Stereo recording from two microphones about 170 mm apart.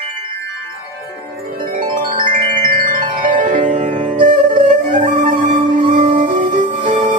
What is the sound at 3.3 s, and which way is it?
Music, 50° right (ahead or behind).